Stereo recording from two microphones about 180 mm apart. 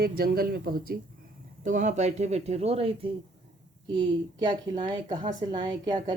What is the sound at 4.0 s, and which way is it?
Speech, 25° right (ahead or behind).